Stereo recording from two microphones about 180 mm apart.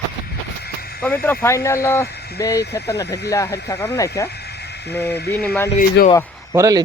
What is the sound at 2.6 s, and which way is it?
Speech, 65° left (ahead or behind).